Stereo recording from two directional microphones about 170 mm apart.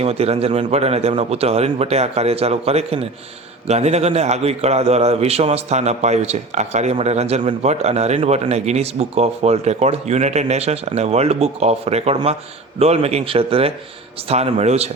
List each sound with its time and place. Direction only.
0.0 s a man's voice: 35° right (ahead or behind)